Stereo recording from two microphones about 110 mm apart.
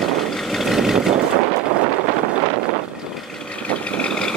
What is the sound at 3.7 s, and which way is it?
Vehicle, 10° left (ahead or behind).